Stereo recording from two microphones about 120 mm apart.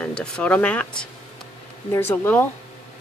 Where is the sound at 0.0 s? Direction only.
10° left (ahead or behind).